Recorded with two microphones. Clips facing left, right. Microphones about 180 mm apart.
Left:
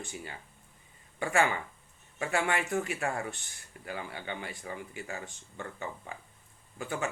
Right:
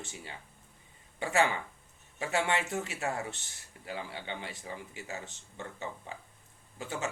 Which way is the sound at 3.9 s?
25° right (ahead or behind).